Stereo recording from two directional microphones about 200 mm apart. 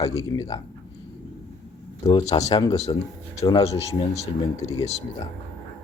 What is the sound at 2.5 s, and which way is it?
Speech, 20° left (ahead or behind).